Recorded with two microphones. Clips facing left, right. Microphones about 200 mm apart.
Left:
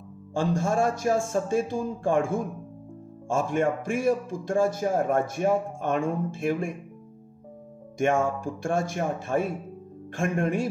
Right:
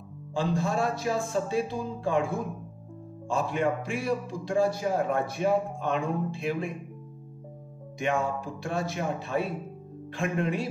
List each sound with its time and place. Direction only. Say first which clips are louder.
0.3 s a man's voice: left 2 dB; 50° left (ahead or behind)
8.0 s a man's voice: left 4 dB; 50° left (ahead or behind)